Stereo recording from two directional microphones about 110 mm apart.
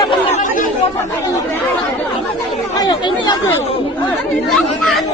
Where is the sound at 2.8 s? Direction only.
40° left (ahead or behind).